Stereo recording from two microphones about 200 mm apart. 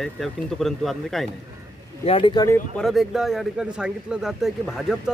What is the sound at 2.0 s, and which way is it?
Speech, 25° left (ahead or behind).